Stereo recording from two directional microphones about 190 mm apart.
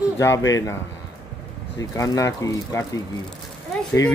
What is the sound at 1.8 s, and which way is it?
Speech, 20° left (ahead or behind).